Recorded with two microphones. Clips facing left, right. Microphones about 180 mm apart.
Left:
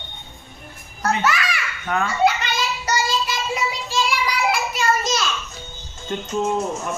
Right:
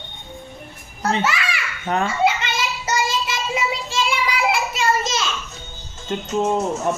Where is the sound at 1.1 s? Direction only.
25° right (ahead or behind).